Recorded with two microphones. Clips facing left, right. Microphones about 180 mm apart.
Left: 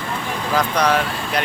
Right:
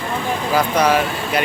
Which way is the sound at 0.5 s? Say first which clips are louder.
Right 2 dB; 5° right (ahead or behind).